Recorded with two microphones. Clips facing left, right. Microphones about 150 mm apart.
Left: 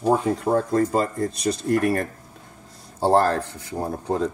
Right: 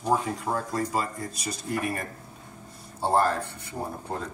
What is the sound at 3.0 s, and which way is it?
Speech, 90° left.